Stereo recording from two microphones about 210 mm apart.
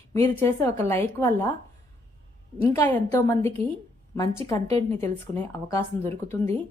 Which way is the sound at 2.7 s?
10° left (ahead or behind).